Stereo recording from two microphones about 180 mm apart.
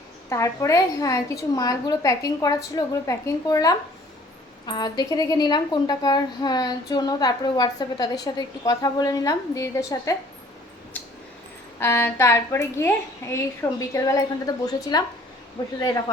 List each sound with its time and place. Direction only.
0.3 s a woman's voice: 15° left (ahead or behind)
11.8 s a woman's voice: 15° left (ahead or behind)